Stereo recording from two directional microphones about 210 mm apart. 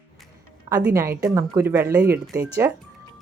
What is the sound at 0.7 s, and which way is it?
A woman's voice, 15° right (ahead or behind).